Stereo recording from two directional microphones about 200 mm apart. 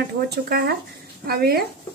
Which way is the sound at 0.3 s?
50° right (ahead or behind).